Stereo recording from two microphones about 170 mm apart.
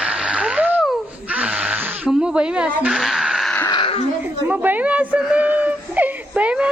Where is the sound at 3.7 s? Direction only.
35° left (ahead or behind).